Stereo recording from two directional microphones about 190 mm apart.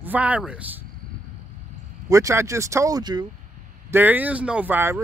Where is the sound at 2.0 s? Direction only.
15° right (ahead or behind).